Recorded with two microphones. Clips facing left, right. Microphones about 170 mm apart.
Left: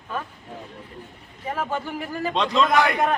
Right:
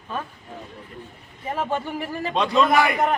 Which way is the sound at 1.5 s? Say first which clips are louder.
Right 2 dB; 15° right (ahead or behind).